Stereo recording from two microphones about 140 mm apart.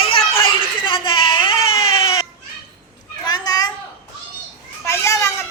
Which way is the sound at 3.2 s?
30° left (ahead or behind).